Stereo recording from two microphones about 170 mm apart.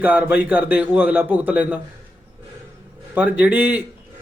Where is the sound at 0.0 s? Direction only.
10° right (ahead or behind).